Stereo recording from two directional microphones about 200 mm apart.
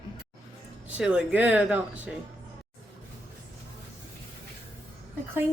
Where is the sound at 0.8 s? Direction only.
5° right (ahead or behind).